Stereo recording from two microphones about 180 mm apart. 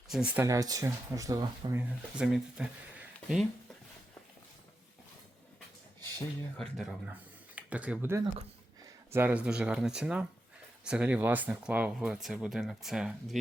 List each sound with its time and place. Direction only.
0.1 s speech: 5° right (ahead or behind)
0.4 s speech: 20° right (ahead or behind)
2.1 s speech: 5° right (ahead or behind)
6.6 s speech: centre (ahead or behind)